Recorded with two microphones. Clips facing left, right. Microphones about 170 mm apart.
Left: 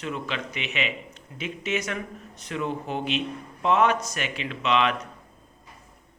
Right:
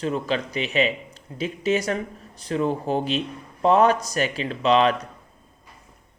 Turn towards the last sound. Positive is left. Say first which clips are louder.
# right 5 dB
turn(degrees=-35)  # may be behind; listen again after turning